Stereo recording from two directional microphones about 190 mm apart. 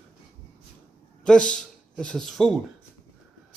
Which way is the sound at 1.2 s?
5° left (ahead or behind).